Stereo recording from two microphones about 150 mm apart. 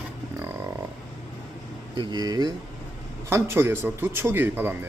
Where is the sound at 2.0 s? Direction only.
30° right (ahead or behind).